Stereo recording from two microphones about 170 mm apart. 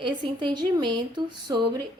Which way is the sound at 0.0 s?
25° right (ahead or behind).